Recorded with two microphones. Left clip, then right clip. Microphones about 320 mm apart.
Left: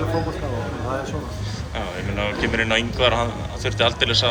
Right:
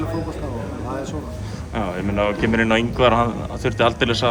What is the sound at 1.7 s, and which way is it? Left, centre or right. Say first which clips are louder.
A man's voice: right 5 dB; right.